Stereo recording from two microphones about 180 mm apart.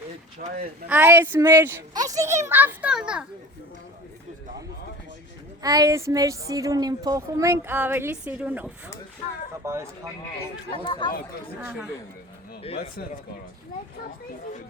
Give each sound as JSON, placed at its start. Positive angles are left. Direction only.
{"t": 0.4, "sound": "speech", "side_deg": -45}
{"t": 0.9, "sound": "a child's voice", "side_deg": -10}
{"t": 5.6, "sound": "a child's voice", "side_deg": -20}
{"t": 10.7, "sound": "speech", "side_deg": 25}